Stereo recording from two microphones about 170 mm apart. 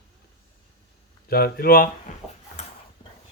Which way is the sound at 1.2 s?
65° left (ahead or behind).